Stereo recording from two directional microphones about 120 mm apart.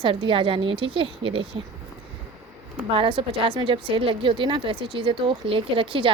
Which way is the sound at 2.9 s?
50° right (ahead or behind).